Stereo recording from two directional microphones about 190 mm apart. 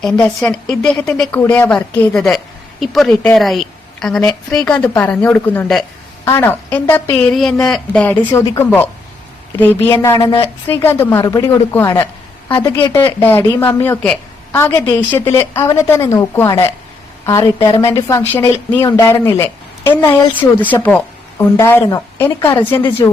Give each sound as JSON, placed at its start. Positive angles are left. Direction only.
{"t": 0.0, "sound": "a woman's voice", "side_deg": 5}
{"t": 9.9, "sound": "speech", "side_deg": 20}
{"t": 10.7, "sound": "a woman's voice", "side_deg": 10}
{"t": 12.5, "sound": "a woman's voice", "side_deg": 25}